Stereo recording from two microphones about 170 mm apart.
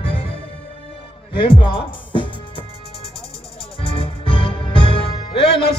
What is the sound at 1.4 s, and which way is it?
Music, 30° left (ahead or behind).